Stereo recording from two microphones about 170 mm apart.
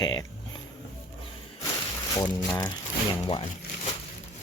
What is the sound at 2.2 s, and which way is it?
Speech, 25° left (ahead or behind).